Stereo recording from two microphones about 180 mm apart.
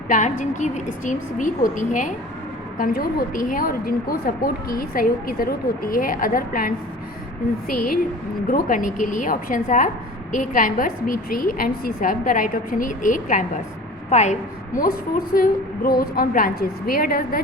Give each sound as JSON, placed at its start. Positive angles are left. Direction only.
{"t": 0.1, "sound": "a woman's voice", "side_deg": 45}